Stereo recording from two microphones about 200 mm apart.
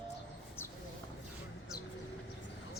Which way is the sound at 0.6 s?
10° left (ahead or behind).